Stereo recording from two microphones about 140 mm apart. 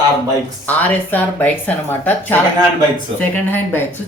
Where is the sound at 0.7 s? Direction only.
10° left (ahead or behind).